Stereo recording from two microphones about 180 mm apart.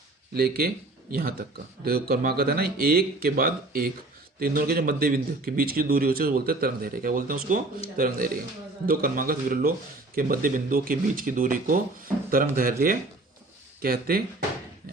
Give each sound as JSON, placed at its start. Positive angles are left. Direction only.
{"t": 0.3, "sound": "speech", "side_deg": -60}